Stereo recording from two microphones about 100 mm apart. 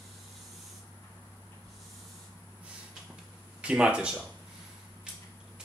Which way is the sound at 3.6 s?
10° right (ahead or behind).